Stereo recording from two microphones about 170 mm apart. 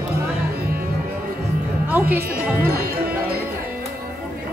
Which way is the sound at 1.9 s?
10° right (ahead or behind).